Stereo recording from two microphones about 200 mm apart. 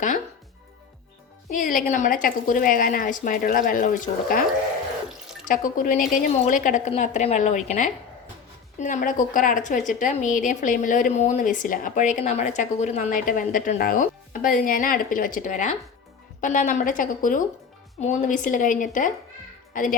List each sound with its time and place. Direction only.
1.5 s a woman's voice: 40° left (ahead or behind)
5.0 s water: centre (ahead or behind)
5.5 s a woman's voice: 40° left (ahead or behind)